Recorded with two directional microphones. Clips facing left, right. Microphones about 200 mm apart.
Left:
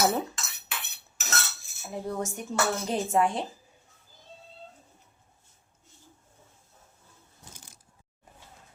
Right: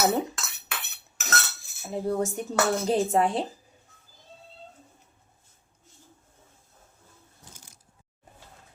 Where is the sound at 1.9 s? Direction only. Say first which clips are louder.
Right 5 dB; 30° right (ahead or behind).